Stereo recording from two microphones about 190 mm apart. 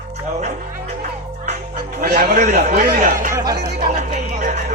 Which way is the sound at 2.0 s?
50° right (ahead or behind).